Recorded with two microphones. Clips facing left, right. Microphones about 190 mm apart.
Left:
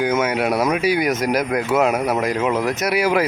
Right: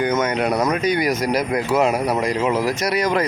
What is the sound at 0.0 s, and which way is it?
Speech, 10° left (ahead or behind).